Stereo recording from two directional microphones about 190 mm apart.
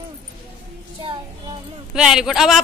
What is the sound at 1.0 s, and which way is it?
Child singing, 25° right (ahead or behind).